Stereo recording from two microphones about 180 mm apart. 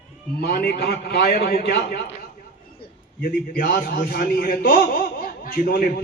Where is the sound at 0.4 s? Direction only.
60° left (ahead or behind).